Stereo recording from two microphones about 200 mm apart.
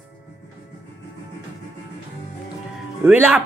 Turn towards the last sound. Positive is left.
turn(degrees=-10)  # may be behind; listen again after turning